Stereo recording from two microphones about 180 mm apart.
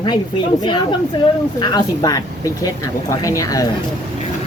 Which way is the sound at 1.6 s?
20° left (ahead or behind).